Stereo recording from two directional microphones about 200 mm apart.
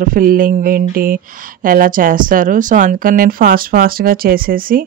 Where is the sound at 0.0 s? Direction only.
45° right (ahead or behind).